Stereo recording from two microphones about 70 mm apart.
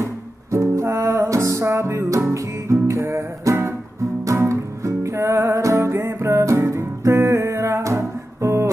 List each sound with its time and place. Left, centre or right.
0.0 s music: right
4.2 s music: right